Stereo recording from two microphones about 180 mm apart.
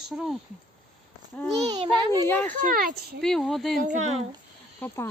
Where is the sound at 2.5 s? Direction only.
50° right (ahead or behind).